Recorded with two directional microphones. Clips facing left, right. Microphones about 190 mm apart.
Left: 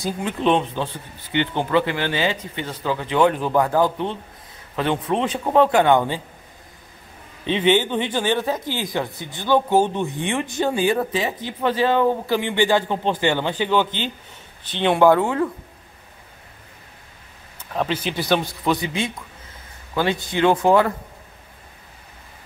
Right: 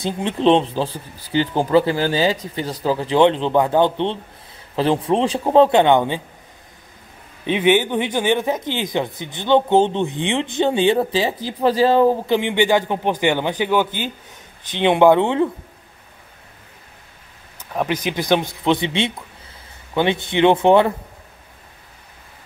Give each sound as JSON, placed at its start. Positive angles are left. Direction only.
{"t": 0.0, "sound": "speech", "side_deg": -30}
{"t": 7.4, "sound": "a man's voice", "side_deg": -15}
{"t": 12.3, "sound": "a man's voice", "side_deg": -20}
{"t": 17.6, "sound": "a man's voice", "side_deg": -10}